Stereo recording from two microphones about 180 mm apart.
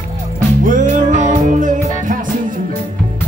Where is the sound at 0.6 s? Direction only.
45° right (ahead or behind).